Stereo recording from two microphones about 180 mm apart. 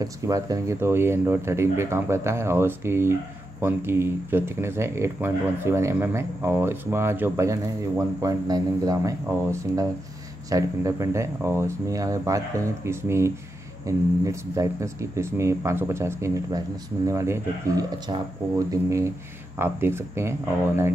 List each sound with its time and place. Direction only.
0.0 s speech: 20° right (ahead or behind)